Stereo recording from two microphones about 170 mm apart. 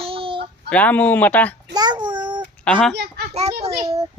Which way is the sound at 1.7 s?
25° right (ahead or behind).